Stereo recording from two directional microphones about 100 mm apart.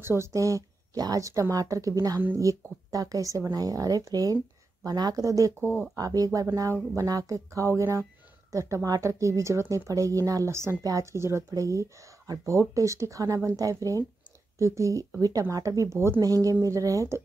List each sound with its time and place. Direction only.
0.0 s a woman's voice: 25° right (ahead or behind)